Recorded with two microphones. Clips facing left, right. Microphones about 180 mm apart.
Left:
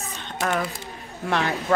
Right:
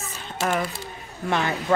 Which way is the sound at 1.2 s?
Centre (ahead or behind).